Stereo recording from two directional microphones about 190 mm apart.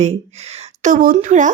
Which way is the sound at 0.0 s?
35° right (ahead or behind).